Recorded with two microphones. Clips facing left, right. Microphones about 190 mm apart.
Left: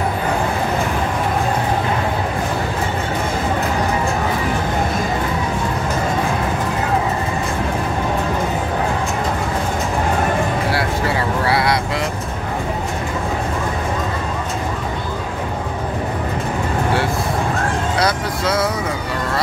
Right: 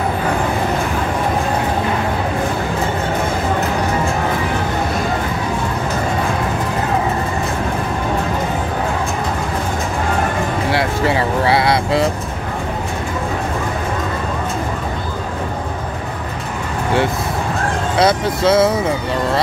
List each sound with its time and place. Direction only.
10.7 s vehicle: 20° right (ahead or behind)
17.9 s vehicle: 25° right (ahead or behind)